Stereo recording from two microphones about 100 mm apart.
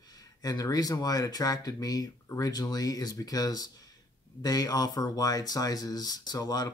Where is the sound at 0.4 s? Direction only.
40° left (ahead or behind).